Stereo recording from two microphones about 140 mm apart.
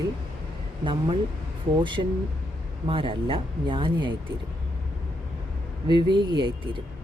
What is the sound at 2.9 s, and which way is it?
Speech, 40° right (ahead or behind).